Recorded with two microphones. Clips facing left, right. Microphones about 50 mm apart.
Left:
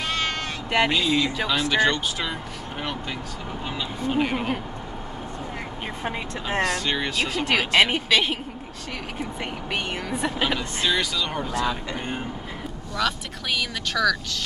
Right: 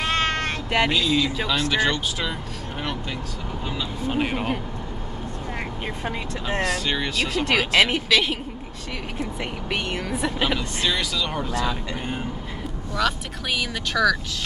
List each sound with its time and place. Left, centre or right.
0.0 s sheep: right
0.7 s speech: centre
4.2 s speech: centre
6.6 s speech: centre